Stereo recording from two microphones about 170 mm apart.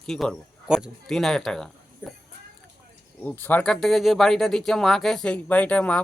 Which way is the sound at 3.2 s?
10° left (ahead or behind).